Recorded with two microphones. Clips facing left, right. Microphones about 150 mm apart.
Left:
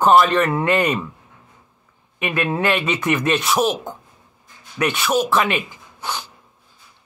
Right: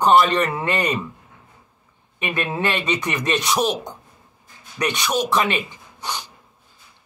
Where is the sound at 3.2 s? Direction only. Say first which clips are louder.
Left 1 dB; 5° left (ahead or behind).